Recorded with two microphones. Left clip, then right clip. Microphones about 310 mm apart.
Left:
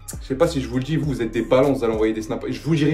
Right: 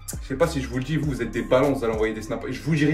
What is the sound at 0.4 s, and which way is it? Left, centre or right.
Speech, centre.